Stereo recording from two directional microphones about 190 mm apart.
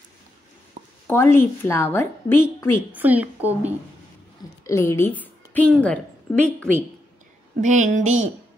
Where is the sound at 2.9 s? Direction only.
10° right (ahead or behind).